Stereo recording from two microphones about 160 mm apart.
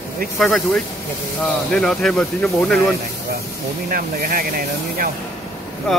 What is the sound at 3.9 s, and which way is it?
Speech, 65° right (ahead or behind).